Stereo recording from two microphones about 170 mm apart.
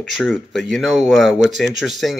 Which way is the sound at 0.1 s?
Centre (ahead or behind).